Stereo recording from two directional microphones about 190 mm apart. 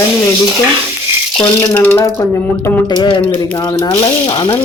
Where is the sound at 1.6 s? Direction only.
10° left (ahead or behind).